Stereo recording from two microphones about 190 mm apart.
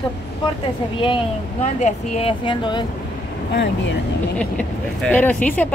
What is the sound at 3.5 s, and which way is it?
Speech, 65° left (ahead or behind).